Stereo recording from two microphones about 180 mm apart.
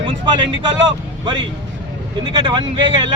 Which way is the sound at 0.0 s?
30° right (ahead or behind).